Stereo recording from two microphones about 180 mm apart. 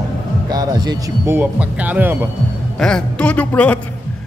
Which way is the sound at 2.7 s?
5° left (ahead or behind).